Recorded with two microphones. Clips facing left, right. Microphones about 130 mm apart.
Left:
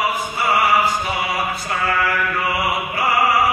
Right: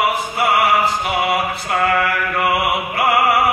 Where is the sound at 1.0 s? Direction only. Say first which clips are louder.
Right 4 dB; 65° right (ahead or behind).